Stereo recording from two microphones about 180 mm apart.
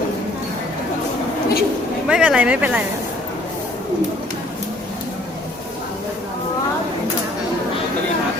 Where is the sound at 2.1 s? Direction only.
5° right (ahead or behind).